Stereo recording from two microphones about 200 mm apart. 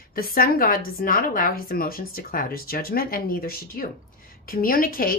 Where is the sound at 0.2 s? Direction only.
45° left (ahead or behind).